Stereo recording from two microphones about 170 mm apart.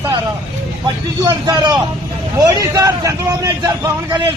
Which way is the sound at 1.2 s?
25° right (ahead or behind).